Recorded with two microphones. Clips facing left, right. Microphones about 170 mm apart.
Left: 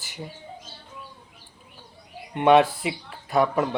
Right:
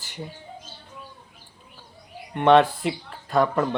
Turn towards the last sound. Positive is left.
turn(degrees=10)  # may be behind; listen again after turning